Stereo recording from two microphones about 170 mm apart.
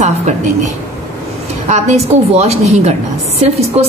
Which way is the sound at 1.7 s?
40° right (ahead or behind).